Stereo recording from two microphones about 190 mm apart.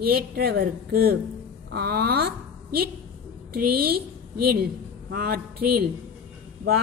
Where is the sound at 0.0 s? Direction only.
55° right (ahead or behind).